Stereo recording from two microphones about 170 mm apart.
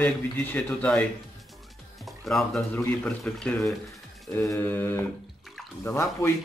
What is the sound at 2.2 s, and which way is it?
A man's voice, 5° left (ahead or behind).